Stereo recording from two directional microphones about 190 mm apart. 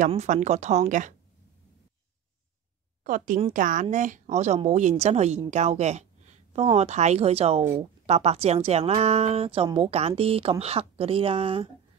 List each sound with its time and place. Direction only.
0.1 s a woman's voice: 35° right (ahead or behind)
3.0 s a woman's voice: 45° right (ahead or behind)